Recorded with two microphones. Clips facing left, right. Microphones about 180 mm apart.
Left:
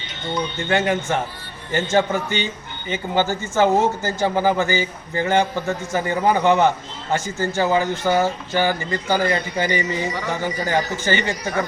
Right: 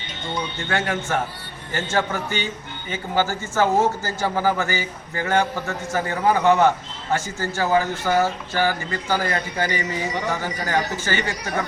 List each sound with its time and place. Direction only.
0.7 s a man's voice: 20° left (ahead or behind)